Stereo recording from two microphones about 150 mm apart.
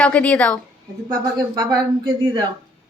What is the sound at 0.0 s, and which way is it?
Speech, 10° left (ahead or behind).